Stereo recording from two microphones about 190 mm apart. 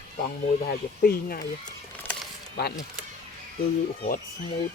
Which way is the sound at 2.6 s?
55° left (ahead or behind).